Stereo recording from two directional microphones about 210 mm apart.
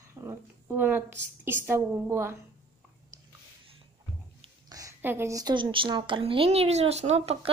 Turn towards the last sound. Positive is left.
turn(degrees=-30)  # may be behind; listen again after turning